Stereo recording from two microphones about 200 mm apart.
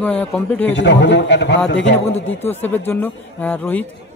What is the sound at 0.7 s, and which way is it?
A man's voice, 60° left (ahead or behind).